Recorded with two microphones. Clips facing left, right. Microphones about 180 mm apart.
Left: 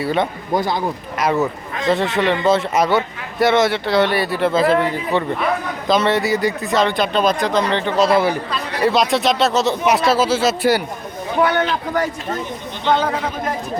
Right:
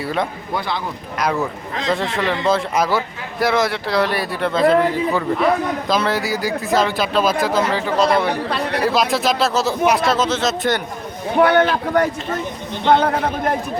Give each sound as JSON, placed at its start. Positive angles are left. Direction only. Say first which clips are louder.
{"t": 0.0, "sound": "a man's voice", "louder": "left 3 dB", "side_deg": 0}
{"t": 0.5, "sound": "speech", "louder": "left 5 dB", "side_deg": 45}
{"t": 1.2, "sound": "a man's voice", "louder": "left 2 dB", "side_deg": 0}
{"t": 8.4, "sound": "a man's voice", "louder": "right 4 dB", "side_deg": -65}
{"t": 8.8, "sound": "a man's voice", "louder": "left 3 dB", "side_deg": 0}
{"t": 11.4, "sound": "speech", "louder": "right 5 dB", "side_deg": -55}